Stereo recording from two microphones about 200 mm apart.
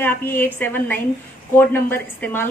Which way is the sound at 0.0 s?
10° left (ahead or behind).